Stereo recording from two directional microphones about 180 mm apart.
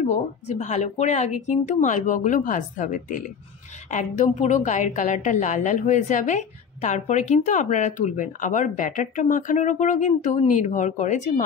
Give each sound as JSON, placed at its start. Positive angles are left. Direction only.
{"t": 0.1, "sound": "a woman's voice", "side_deg": 40}